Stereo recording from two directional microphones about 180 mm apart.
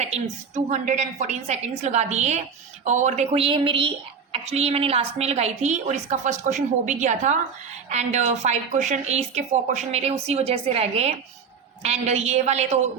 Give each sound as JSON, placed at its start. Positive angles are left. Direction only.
{"t": 0.0, "sound": "a woman's voice", "side_deg": -40}